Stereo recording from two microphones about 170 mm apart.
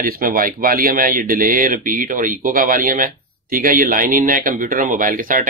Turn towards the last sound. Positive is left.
turn(degrees=-55)  # may be behind; listen again after turning